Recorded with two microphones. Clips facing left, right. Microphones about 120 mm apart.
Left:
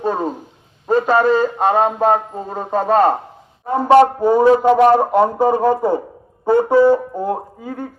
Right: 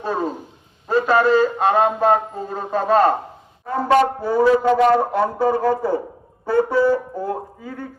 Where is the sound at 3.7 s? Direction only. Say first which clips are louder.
Left 5 dB; 20° left (ahead or behind).